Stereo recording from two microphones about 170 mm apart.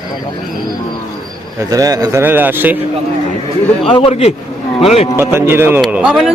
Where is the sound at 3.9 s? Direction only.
35° left (ahead or behind).